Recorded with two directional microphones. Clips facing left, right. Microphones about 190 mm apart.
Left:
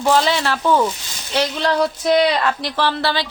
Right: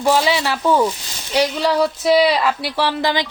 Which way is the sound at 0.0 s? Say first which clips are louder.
Even; 10° right (ahead or behind).